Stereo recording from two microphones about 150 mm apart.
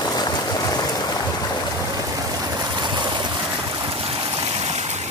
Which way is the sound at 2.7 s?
30° right (ahead or behind).